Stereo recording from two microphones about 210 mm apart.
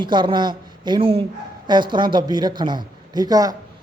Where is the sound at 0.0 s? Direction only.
20° right (ahead or behind).